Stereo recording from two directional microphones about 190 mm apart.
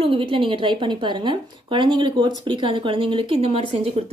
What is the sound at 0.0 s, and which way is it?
Speech, 30° right (ahead or behind).